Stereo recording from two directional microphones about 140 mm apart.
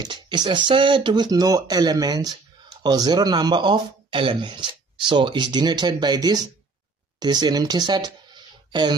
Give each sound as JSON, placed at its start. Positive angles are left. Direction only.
{"t": 0.0, "sound": "speech", "side_deg": -35}